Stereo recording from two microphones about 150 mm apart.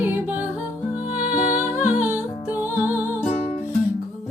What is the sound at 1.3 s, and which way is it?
Music, 55° left (ahead or behind).